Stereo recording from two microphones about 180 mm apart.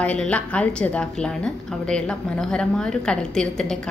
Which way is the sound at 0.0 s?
5° left (ahead or behind).